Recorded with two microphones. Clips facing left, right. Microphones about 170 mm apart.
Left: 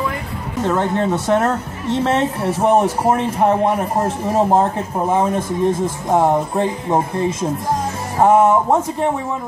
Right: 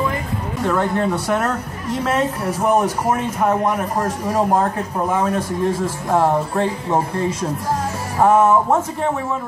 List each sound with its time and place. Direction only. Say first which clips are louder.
0.6 s a woman's voice: left 1 dB; 20° left (ahead or behind)